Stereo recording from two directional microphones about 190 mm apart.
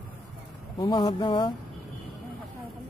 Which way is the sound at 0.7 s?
25° left (ahead or behind).